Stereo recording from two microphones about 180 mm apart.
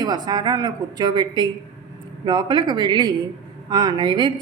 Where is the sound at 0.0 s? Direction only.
20° right (ahead or behind).